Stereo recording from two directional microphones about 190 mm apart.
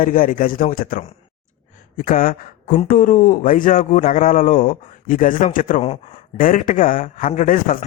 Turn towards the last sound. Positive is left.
turn(degrees=45)  # may be behind; listen again after turning